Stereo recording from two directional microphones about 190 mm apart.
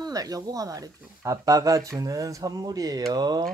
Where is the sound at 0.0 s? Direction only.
20° right (ahead or behind).